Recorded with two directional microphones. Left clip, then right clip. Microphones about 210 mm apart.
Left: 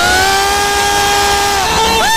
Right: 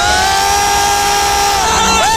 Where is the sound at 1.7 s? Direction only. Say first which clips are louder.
Even; 45° right (ahead or behind).